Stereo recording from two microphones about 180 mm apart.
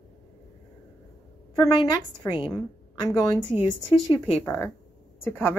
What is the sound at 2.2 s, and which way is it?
Speech, 25° left (ahead or behind).